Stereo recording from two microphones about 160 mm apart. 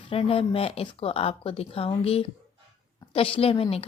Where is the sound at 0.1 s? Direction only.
35° left (ahead or behind).